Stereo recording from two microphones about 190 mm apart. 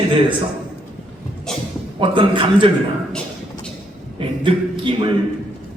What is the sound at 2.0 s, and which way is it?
Speech, 25° right (ahead or behind).